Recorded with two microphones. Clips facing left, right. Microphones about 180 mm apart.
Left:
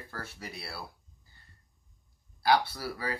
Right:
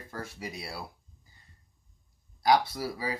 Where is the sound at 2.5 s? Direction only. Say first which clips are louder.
Right 2 dB; 15° right (ahead or behind).